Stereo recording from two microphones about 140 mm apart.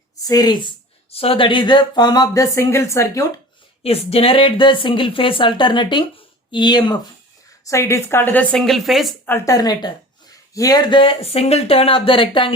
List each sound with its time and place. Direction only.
0.2 s speech: 25° left (ahead or behind)
1.1 s speech: 45° left (ahead or behind); by 3.2 s 20° left (ahead or behind)
3.8 s speech: 45° left (ahead or behind)
7.7 s a woman's voice: 20° left (ahead or behind); by 9.1 s centre (ahead or behind)
9.2 s speech: 20° left (ahead or behind); by 12.5 s 35° left (ahead or behind)